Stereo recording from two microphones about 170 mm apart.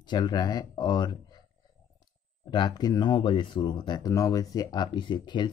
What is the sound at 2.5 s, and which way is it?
Speech, 25° left (ahead or behind).